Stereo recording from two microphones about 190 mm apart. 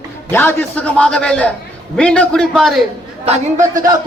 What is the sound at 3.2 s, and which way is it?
Speech, 40° right (ahead or behind).